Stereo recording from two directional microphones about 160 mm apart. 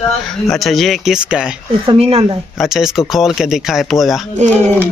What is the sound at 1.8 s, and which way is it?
Speech, 35° right (ahead or behind).